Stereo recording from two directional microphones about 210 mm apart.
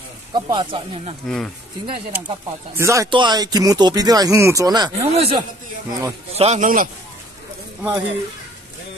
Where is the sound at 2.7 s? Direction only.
15° right (ahead or behind).